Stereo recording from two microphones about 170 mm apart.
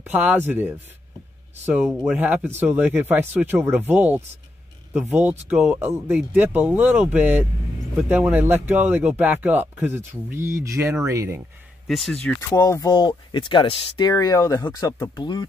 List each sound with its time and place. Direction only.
0.0 s speech: 10° right (ahead or behind)
11.9 s speech: 5° left (ahead or behind)
12.4 s speech: 15° left (ahead or behind)